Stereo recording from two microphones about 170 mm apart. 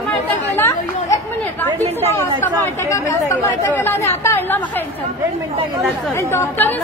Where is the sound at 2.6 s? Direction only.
15° left (ahead or behind).